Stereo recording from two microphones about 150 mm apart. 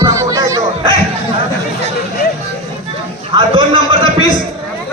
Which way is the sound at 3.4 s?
35° right (ahead or behind).